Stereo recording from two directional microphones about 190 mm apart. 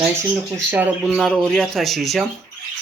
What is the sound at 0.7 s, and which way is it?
Speech, 5° right (ahead or behind).